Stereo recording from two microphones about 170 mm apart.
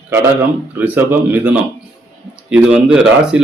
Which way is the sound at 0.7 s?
10° right (ahead or behind).